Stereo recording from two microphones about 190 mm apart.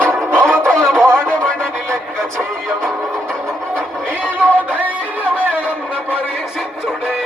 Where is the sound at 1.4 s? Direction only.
5° left (ahead or behind).